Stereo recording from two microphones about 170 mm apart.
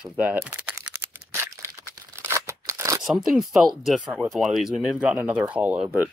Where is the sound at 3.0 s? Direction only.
Centre (ahead or behind).